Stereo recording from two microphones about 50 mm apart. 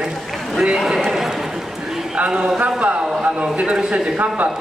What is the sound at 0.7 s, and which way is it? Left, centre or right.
Speech, centre.